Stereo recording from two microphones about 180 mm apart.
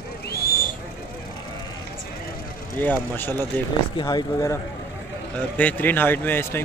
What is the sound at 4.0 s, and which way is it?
Speech, 25° left (ahead or behind).